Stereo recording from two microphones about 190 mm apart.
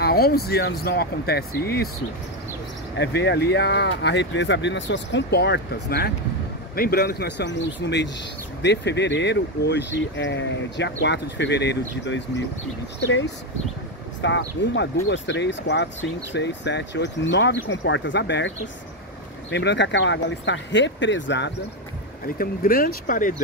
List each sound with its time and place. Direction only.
0.0 s speech: 55° left (ahead or behind)
3.0 s speech: 65° left (ahead or behind)
14.2 s speech: 70° left (ahead or behind)
19.5 s speech: 65° left (ahead or behind)
22.4 s speech: 50° left (ahead or behind)